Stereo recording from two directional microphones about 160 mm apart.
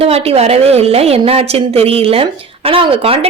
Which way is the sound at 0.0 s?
40° right (ahead or behind).